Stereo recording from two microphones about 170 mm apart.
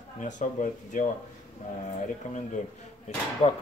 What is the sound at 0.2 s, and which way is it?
Speech, 50° left (ahead or behind).